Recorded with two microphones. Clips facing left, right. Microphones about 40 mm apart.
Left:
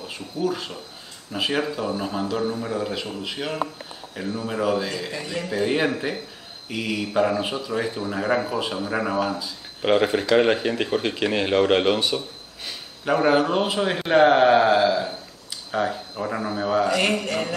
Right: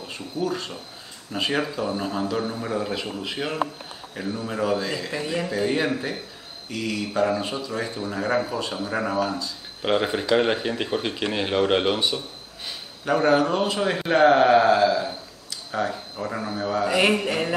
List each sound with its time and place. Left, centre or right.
0.1 s a man's voice: centre
13.0 s speech: centre
16.8 s speech: centre